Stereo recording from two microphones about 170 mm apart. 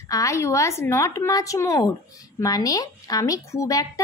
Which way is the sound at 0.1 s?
20° left (ahead or behind).